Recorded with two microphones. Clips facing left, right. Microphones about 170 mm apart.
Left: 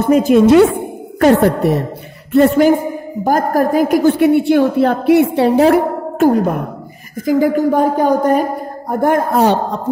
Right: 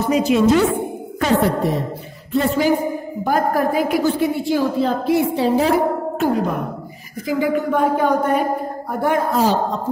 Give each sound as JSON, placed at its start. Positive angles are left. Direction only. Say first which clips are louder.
{"t": 0.0, "sound": "a woman's voice", "louder": "left 6 dB", "side_deg": 50}
{"t": 1.2, "sound": "a woman's voice", "louder": "left 7 dB", "side_deg": 70}
{"t": 2.3, "sound": "a sound", "louder": "left 8 dB", "side_deg": 60}
{"t": 3.3, "sound": "a woman's voice", "louder": "left 4 dB", "side_deg": 45}
{"t": 4.1, "sound": "a woman's voice", "louder": "left 8 dB", "side_deg": 65}
{"t": 9.4, "sound": "a woman's voice", "louder": "left 4 dB", "side_deg": 65}